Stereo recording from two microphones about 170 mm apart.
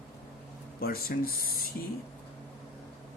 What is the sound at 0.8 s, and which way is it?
Speech, 60° left (ahead or behind).